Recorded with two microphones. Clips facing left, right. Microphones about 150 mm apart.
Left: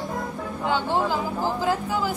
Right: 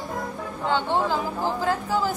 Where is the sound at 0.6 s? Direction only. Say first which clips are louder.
Even; 10° left (ahead or behind).